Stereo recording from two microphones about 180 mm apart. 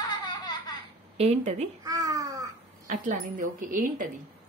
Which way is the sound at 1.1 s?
35° right (ahead or behind).